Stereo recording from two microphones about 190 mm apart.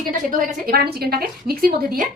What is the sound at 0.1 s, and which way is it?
A woman's voice, 45° right (ahead or behind).